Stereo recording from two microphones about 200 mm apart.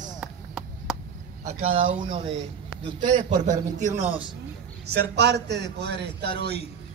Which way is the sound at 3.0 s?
40° right (ahead or behind).